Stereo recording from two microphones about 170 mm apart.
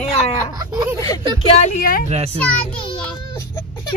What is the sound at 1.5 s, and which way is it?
Speech, 45° left (ahead or behind).